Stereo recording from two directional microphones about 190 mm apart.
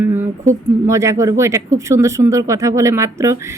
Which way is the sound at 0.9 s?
15° right (ahead or behind).